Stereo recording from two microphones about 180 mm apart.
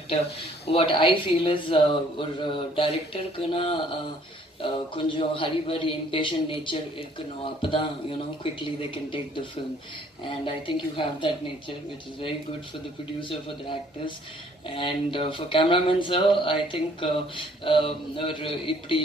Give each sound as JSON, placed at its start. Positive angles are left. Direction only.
{"t": 0.7, "sound": "speech", "side_deg": 30}
{"t": 13.2, "sound": "speech", "side_deg": 25}